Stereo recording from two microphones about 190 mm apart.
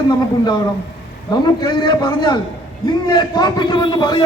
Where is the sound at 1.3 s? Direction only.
25° left (ahead or behind).